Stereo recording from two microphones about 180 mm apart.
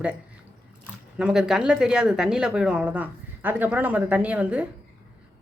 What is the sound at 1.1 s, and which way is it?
A woman's voice, 5° right (ahead or behind).